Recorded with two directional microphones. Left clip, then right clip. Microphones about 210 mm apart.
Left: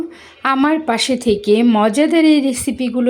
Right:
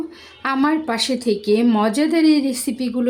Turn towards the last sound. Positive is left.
turn(degrees=5)  # may be behind; listen again after turning